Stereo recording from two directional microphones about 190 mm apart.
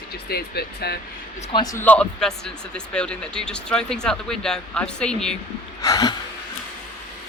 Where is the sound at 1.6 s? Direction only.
10° left (ahead or behind).